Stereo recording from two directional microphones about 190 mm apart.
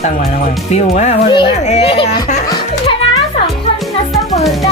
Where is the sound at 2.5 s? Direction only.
25° left (ahead or behind).